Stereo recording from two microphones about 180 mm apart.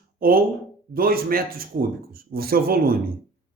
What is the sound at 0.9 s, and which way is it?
Speech, 55° right (ahead or behind).